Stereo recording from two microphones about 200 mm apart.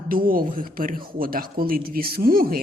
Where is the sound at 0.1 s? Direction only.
45° right (ahead or behind).